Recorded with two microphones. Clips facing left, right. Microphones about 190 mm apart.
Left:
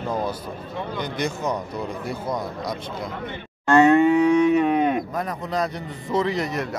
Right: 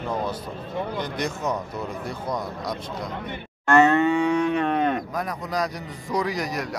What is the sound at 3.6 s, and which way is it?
Livestock, 15° left (ahead or behind).